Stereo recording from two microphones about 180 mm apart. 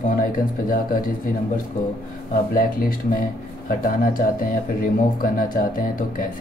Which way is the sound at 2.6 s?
50° left (ahead or behind).